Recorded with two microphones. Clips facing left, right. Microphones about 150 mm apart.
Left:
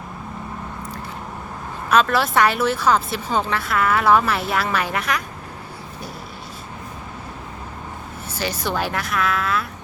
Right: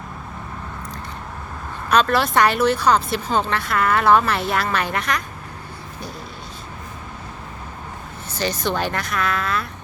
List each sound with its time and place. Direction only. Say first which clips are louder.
1.9 s a woman's voice: even; 5° left (ahead or behind)
8.3 s a woman's voice: right 2 dB; 5° left (ahead or behind)